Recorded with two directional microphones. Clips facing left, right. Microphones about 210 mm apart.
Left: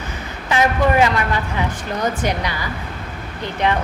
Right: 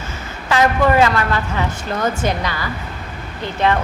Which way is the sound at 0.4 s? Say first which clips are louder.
Right 2 dB; 15° left (ahead or behind).